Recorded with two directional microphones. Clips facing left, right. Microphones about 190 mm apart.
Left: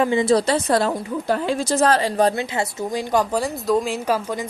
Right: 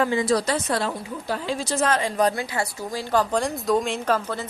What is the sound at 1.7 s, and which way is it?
Speech, 35° left (ahead or behind).